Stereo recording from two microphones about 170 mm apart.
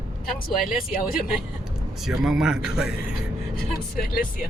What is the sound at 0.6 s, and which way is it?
Speech, 55° left (ahead or behind).